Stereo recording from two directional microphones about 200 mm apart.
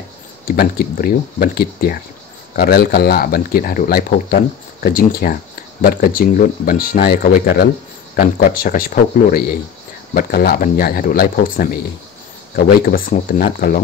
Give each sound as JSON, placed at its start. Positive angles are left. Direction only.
{"t": 0.5, "sound": "speech", "side_deg": 50}